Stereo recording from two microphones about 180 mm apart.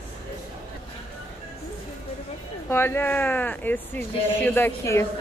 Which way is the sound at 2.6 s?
15° left (ahead or behind).